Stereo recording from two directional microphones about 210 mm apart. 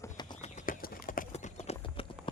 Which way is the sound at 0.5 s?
40° left (ahead or behind).